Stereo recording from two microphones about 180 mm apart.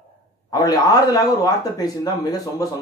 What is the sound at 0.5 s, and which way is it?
Speech, 20° left (ahead or behind).